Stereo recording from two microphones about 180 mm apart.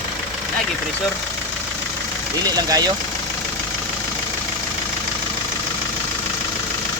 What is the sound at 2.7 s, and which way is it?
Speech, 20° right (ahead or behind).